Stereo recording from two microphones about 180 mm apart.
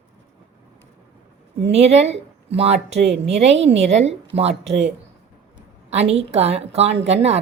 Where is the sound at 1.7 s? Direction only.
35° right (ahead or behind).